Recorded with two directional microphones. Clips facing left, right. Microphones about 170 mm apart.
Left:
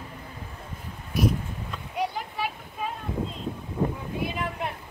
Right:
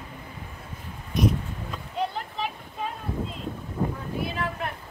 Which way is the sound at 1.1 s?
5° left (ahead or behind).